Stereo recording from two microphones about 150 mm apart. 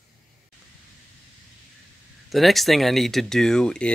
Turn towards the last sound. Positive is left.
turn(degrees=5)  # may be behind; listen again after turning